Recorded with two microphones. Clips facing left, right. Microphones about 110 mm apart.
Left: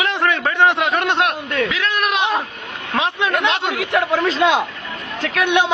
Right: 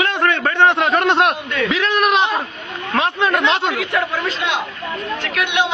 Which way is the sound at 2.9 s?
15° left (ahead or behind).